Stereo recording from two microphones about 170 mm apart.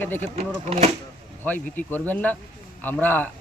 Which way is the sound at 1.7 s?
10° left (ahead or behind).